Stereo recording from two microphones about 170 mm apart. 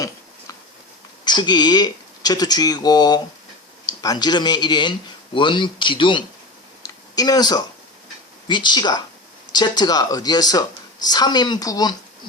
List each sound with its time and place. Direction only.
1.2 s speech: 25° left (ahead or behind)
6.8 s a sound: 20° left (ahead or behind)
8.4 s speech: 25° left (ahead or behind)